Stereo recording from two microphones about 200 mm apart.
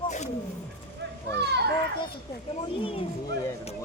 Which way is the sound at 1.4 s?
55° right (ahead or behind).